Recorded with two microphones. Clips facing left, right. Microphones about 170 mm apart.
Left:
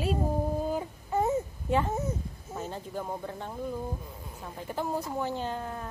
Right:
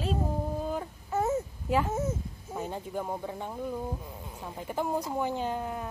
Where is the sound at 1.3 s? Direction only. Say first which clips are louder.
Left 1 dB; 5° right (ahead or behind).